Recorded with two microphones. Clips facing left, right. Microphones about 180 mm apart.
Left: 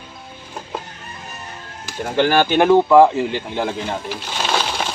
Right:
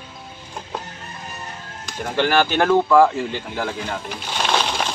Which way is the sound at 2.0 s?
20° left (ahead or behind).